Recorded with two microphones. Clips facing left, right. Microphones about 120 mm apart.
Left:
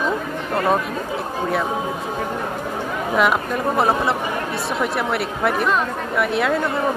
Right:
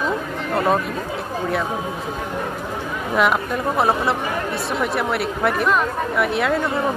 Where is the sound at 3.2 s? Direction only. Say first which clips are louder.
Even; centre (ahead or behind).